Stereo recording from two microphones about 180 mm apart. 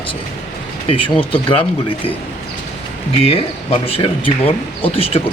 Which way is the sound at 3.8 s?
30° left (ahead or behind).